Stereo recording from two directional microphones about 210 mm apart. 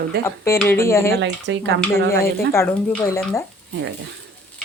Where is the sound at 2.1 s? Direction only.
10° left (ahead or behind).